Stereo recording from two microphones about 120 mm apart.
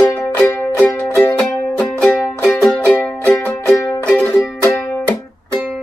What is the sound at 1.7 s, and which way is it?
Music, 5° left (ahead or behind).